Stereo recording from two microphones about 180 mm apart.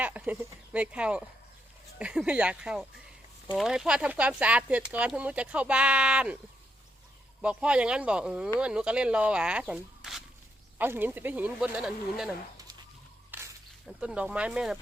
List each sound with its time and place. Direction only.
0.0 s speech: 10° right (ahead or behind)
7.4 s speech: 5° right (ahead or behind)
13.3 s a sound: 10° right (ahead or behind)
13.8 s speech: 5° right (ahead or behind)